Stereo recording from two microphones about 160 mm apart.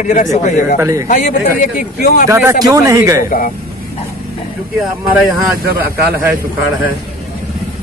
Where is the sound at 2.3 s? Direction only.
15° right (ahead or behind).